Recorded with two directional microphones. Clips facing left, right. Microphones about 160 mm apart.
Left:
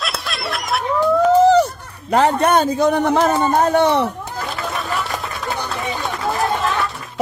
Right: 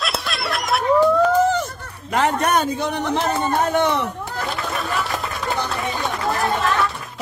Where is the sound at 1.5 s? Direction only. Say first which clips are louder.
Left 9 dB; 35° left (ahead or behind).